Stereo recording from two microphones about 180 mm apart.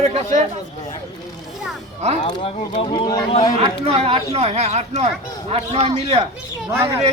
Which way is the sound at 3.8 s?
35° right (ahead or behind).